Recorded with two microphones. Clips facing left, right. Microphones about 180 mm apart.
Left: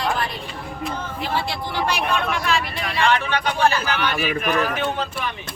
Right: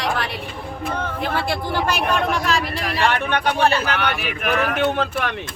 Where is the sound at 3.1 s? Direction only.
60° right (ahead or behind).